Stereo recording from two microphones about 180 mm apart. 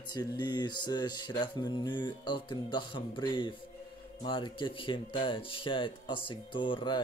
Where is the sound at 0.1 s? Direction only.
20° left (ahead or behind).